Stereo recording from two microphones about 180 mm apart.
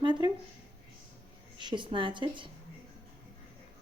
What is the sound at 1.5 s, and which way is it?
Speech, 25° right (ahead or behind).